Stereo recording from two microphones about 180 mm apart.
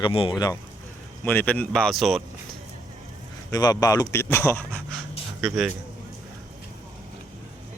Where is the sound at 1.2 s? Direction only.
10° left (ahead or behind).